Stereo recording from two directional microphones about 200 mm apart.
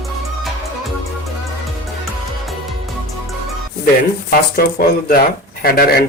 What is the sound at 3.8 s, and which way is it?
Speech, 50° left (ahead or behind).